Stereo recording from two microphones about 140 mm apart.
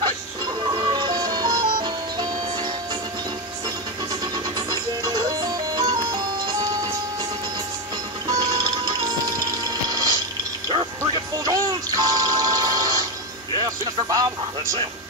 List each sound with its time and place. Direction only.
0.7 s music: 35° right (ahead or behind)
4.6 s music: 30° right (ahead or behind)
8.3 s music: 30° right (ahead or behind)
9.4 s a sound: 25° right (ahead or behind)
11.0 s music: 25° right (ahead or behind)